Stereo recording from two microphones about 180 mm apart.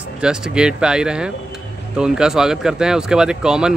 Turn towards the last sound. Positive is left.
turn(degrees=-5)  # may be behind; listen again after turning